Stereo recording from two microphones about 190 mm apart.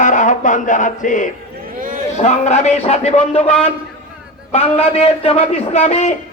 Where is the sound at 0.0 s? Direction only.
40° left (ahead or behind).